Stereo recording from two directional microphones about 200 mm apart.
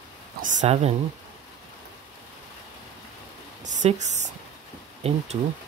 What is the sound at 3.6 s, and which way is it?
Speech, 35° right (ahead or behind).